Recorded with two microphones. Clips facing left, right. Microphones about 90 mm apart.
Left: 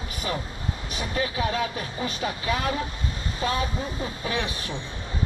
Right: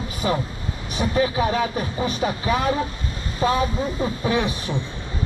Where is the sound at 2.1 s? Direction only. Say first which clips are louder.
Right 3 dB; 15° right (ahead or behind).